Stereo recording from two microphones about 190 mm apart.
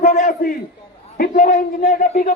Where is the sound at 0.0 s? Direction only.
40° left (ahead or behind).